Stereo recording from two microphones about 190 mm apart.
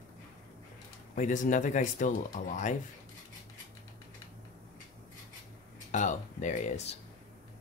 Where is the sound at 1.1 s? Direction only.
40° left (ahead or behind).